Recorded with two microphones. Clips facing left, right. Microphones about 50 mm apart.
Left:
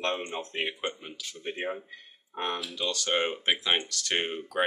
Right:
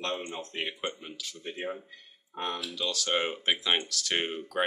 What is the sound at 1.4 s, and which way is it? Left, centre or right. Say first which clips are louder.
Speech: left 3 dB; left.